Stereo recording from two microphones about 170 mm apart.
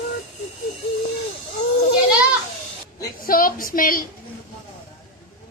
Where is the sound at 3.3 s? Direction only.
55° left (ahead or behind).